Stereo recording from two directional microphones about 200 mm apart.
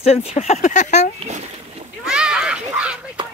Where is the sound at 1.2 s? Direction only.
35° right (ahead or behind).